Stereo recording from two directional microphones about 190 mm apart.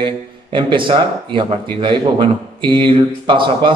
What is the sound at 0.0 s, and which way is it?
A man's voice, 25° right (ahead or behind).